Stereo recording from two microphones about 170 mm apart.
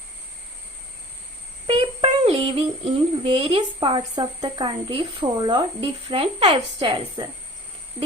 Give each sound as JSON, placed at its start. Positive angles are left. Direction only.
{"t": 1.6, "sound": "child singing", "side_deg": -35}